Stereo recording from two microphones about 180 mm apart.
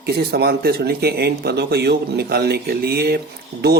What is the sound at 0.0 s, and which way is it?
Speech, 60° right (ahead or behind).